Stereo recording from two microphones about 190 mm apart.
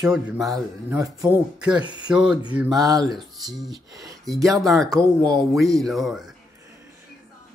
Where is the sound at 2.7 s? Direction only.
20° right (ahead or behind).